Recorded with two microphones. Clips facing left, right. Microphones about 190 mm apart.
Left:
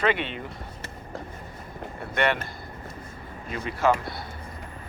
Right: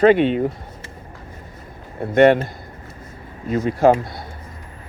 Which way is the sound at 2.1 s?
45° right (ahead or behind).